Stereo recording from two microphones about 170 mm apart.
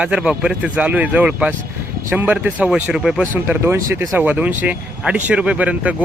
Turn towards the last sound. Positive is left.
turn(degrees=-10)  # may be behind; listen again after turning